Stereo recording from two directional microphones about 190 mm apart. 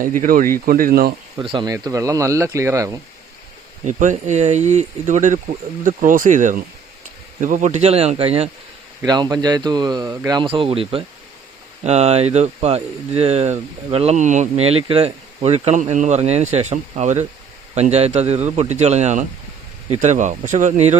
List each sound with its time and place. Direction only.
0.0 s speech: 45° right (ahead or behind)
1.4 s speech: 25° right (ahead or behind)
3.8 s speech: 40° right (ahead or behind)
9.0 s speech: 20° right (ahead or behind); by 21.0 s 35° right (ahead or behind)